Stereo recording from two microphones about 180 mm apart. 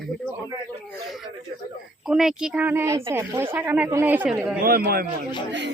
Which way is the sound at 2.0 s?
5° right (ahead or behind).